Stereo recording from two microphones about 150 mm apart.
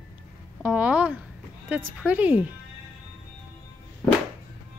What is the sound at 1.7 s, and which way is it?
Speech, 10° right (ahead or behind).